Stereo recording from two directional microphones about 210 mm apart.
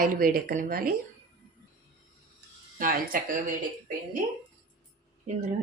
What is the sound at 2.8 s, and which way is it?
Speech, 40° right (ahead or behind).